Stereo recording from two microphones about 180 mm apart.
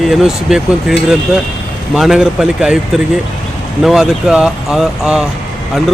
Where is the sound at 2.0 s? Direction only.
5° right (ahead or behind).